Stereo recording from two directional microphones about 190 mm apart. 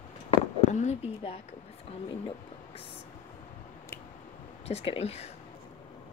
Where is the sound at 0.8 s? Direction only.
35° left (ahead or behind).